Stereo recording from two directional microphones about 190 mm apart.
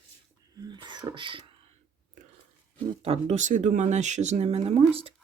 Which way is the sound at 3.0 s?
35° right (ahead or behind).